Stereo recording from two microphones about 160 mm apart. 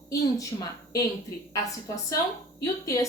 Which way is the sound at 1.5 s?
20° left (ahead or behind).